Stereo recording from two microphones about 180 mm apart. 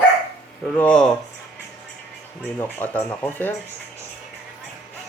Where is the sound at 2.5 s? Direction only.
10° left (ahead or behind).